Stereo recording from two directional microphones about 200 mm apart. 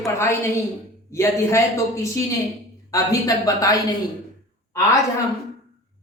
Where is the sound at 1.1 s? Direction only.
15° left (ahead or behind).